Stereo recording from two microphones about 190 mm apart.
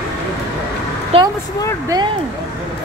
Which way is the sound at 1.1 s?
30° right (ahead or behind).